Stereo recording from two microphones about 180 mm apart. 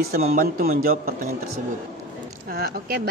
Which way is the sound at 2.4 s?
60° right (ahead or behind).